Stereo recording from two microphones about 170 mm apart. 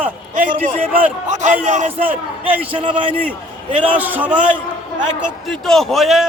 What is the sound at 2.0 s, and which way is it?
A man's voice, 10° right (ahead or behind).